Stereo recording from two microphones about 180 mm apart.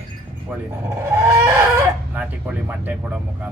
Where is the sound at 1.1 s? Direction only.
15° right (ahead or behind).